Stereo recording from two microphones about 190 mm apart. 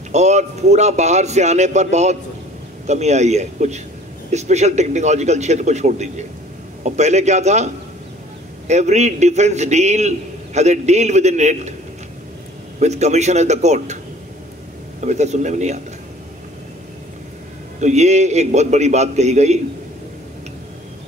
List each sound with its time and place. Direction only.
0.1 s a man's voice: 35° right (ahead or behind)
12.7 s a man's voice: 35° right (ahead or behind)
15.0 s a man's voice: 35° right (ahead or behind)
17.7 s a man's voice: 35° right (ahead or behind)